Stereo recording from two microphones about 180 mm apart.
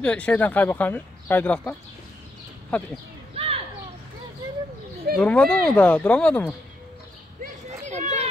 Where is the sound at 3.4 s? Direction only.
35° right (ahead or behind).